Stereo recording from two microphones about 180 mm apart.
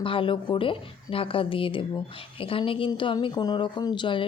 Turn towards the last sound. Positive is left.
turn(degrees=25)  # may be behind; listen again after turning